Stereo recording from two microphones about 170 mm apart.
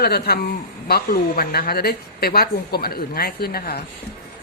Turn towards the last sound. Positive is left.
turn(degrees=65)  # may be behind; listen again after turning